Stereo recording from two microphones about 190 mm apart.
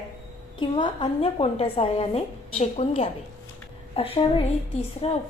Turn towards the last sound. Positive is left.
turn(degrees=35)  # may be behind; listen again after turning